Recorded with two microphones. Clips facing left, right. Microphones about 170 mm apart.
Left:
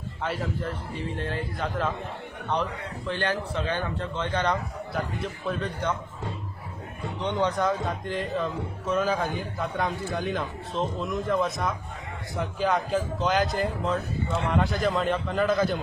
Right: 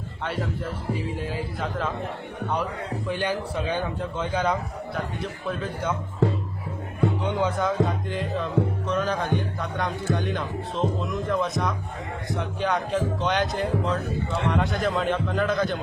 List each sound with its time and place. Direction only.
0.3 s speech: centre (ahead or behind)
3.1 s speech: 10° right (ahead or behind)
7.2 s speech: 5° right (ahead or behind)